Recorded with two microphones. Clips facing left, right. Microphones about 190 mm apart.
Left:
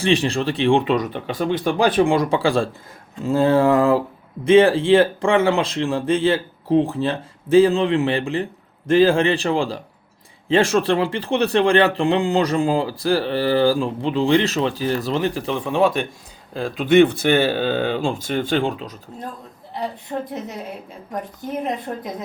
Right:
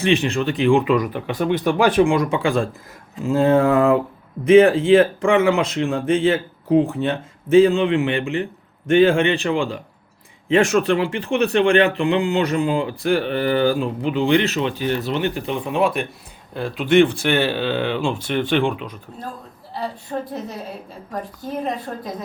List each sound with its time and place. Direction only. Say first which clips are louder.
0.0 s speech: even; 35° left (ahead or behind)
17.4 s speech: left 1 dB; 45° left (ahead or behind)
19.7 s a woman's voice: even; 20° left (ahead or behind)